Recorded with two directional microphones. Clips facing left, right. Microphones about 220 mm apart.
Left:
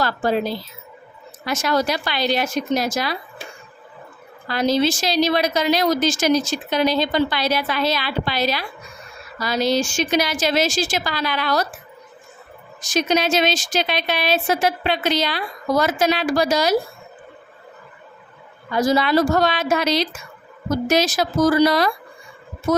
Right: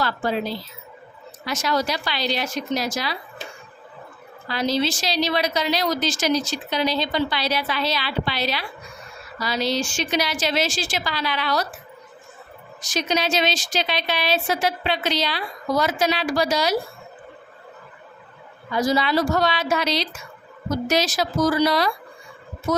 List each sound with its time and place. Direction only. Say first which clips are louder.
0.0 s a woman's voice: left 4 dB; 45° left (ahead or behind)
4.4 s a woman's voice: left 4 dB; 50° left (ahead or behind)
12.8 s a woman's voice: left 4 dB; 50° left (ahead or behind)
18.7 s a woman's voice: left 3 dB; 50° left (ahead or behind)